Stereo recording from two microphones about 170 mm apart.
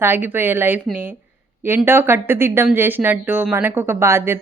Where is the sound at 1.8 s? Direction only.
15° right (ahead or behind).